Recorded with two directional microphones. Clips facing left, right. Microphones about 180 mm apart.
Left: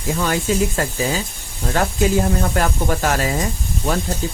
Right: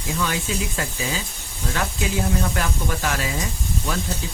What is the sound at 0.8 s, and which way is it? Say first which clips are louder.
Speech: left 6 dB; 50° left (ahead or behind).